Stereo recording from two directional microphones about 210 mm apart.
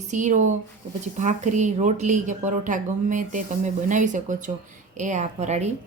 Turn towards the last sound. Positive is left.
turn(degrees=-35)  # may be behind; listen again after turning